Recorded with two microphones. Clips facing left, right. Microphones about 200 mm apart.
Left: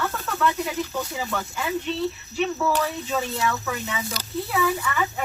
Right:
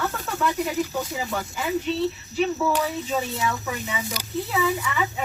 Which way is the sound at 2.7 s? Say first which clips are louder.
Even; 10° right (ahead or behind).